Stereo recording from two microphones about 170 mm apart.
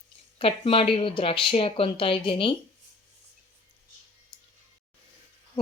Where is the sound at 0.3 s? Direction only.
30° left (ahead or behind).